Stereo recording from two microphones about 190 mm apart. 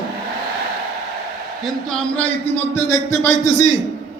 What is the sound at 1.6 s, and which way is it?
Speech, 5° left (ahead or behind).